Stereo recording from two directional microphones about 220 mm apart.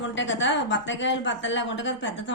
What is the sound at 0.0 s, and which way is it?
A woman's voice, 55° left (ahead or behind).